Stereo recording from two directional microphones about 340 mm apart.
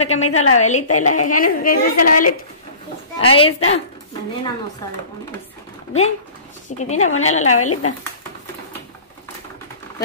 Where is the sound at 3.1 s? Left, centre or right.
Centre.